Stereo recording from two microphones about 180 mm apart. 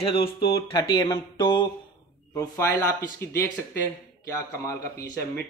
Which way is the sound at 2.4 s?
15° left (ahead or behind).